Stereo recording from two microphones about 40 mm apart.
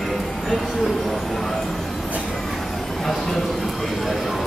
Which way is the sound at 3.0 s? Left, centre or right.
Centre.